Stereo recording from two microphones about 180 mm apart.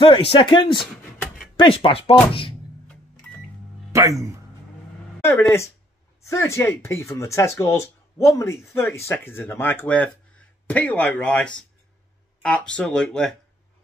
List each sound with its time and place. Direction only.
0.0 s speech: 30° left (ahead or behind)
3.9 s speech: 15° right (ahead or behind)
6.2 s speech: 15° left (ahead or behind)